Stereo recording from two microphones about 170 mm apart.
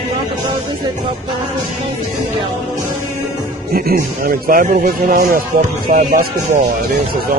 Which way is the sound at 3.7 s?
60° right (ahead or behind).